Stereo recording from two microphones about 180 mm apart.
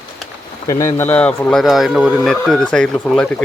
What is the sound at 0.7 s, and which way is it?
Speech, 15° left (ahead or behind).